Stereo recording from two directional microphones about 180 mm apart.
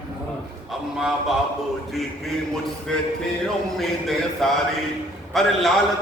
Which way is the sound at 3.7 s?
Centre (ahead or behind).